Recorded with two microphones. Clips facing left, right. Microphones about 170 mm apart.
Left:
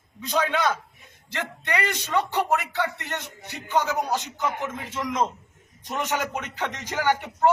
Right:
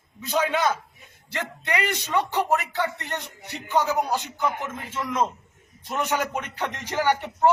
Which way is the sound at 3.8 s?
10° right (ahead or behind).